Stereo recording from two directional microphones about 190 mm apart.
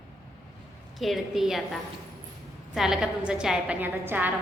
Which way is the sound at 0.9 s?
Centre (ahead or behind).